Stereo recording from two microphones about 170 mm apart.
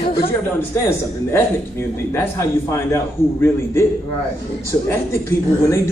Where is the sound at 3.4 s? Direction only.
15° left (ahead or behind).